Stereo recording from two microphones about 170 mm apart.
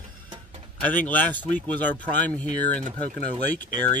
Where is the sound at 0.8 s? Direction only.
10° left (ahead or behind).